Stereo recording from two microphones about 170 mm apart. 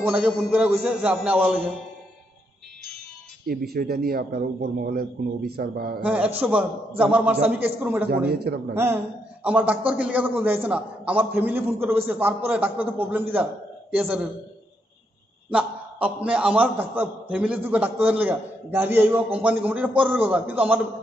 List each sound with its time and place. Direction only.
0.0 s a man's voice: 5° right (ahead or behind)
3.4 s speech: 65° right (ahead or behind)
6.0 s a man's voice: 5° right (ahead or behind)
8.3 s a man's voice: 65° right (ahead or behind)
8.7 s a man's voice: 10° right (ahead or behind)
15.5 s a man's voice: 5° right (ahead or behind)